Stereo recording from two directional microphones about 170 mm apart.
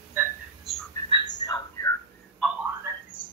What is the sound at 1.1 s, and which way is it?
Bird, 25° left (ahead or behind).